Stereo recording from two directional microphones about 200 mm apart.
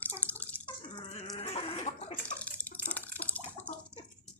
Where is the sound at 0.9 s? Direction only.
30° left (ahead or behind).